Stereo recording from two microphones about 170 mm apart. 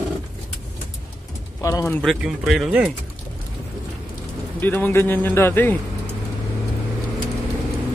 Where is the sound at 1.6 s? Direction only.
15° left (ahead or behind).